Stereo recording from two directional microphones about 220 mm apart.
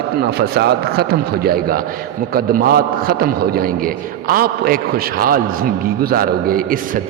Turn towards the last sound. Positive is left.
turn(degrees=-40)  # may be behind; listen again after turning